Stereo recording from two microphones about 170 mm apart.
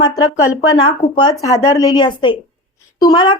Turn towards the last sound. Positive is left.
turn(degrees=25)  # may be behind; listen again after turning